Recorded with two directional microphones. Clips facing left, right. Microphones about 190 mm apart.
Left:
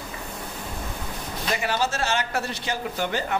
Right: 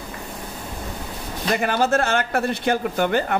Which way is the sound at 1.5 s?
55° right (ahead or behind).